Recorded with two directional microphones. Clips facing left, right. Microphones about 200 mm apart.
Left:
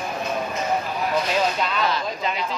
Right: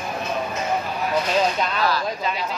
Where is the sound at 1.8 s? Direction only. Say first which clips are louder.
Right 2 dB; 20° left (ahead or behind).